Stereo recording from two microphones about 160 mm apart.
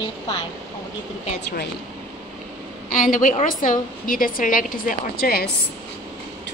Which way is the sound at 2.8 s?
60° left (ahead or behind).